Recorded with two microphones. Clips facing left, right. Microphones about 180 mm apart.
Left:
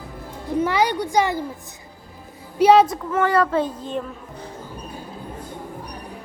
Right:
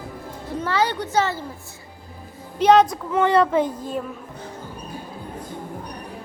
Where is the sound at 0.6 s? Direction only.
15° left (ahead or behind).